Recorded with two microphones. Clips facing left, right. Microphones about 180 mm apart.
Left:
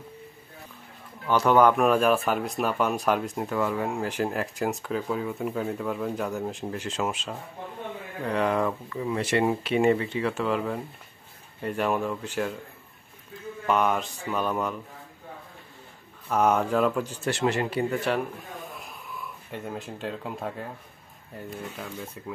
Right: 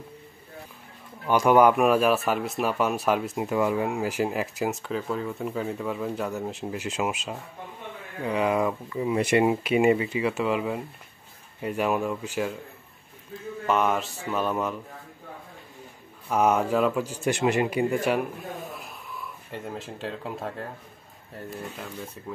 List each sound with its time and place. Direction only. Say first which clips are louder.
1.2 s speech: right 1 dB; 10° right (ahead or behind)
13.7 s speech: even; centre (ahead or behind)
16.3 s speech: right 1 dB; 10° right (ahead or behind)
18.8 s a sound: even; centre (ahead or behind)
21.5 s speech: even; centre (ahead or behind)